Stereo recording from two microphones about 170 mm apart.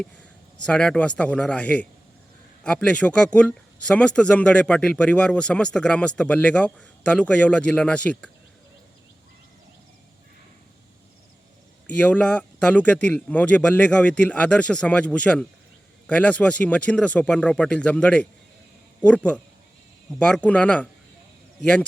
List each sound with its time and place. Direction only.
0.0 s a man's voice: 5° left (ahead or behind)
11.9 s speech: 10° left (ahead or behind)